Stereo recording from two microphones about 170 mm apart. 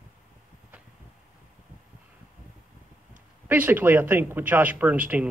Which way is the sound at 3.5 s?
10° right (ahead or behind).